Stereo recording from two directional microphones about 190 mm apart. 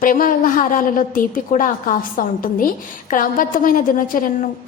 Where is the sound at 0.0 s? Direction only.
45° left (ahead or behind).